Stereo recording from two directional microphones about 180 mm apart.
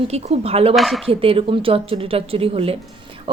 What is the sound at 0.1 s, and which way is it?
Speech, 35° right (ahead or behind).